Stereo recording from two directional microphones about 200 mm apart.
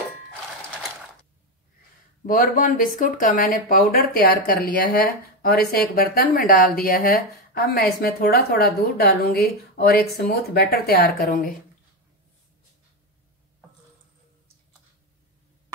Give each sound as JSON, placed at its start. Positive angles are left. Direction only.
{"t": 2.2, "sound": "speech", "side_deg": 40}